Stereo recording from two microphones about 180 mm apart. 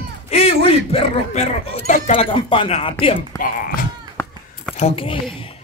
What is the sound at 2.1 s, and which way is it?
Speech, 30° left (ahead or behind).